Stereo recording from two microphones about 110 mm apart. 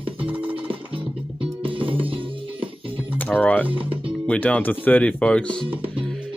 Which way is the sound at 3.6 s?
55° right (ahead or behind).